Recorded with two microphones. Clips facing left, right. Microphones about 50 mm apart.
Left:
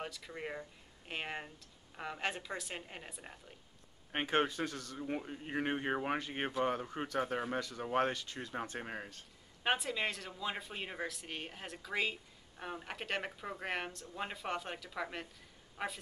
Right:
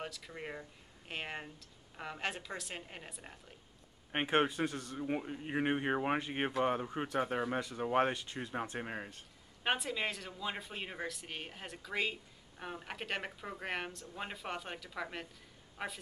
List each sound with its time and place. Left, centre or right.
0.0 s speech: centre
4.1 s speech: centre
5.0 s speech: centre
8.7 s speech: centre